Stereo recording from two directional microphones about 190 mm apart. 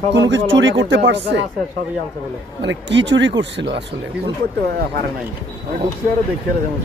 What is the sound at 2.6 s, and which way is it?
Speech, 70° right (ahead or behind).